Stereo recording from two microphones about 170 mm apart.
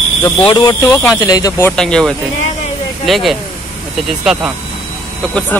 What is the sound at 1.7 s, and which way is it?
Speech, 5° left (ahead or behind).